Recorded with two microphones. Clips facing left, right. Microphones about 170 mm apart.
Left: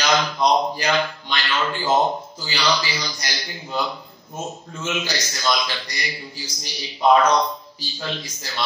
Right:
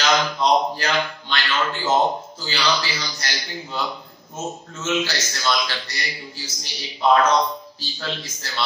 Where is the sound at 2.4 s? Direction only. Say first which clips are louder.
Left 1 dB; 10° left (ahead or behind).